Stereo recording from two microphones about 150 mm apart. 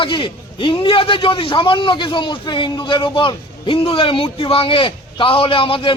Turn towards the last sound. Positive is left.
turn(degrees=35)  # may be behind; listen again after turning